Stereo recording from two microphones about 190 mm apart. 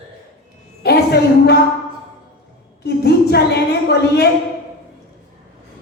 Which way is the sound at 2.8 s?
60° left (ahead or behind).